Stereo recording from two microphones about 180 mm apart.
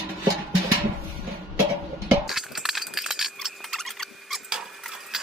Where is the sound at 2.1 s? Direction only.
Centre (ahead or behind).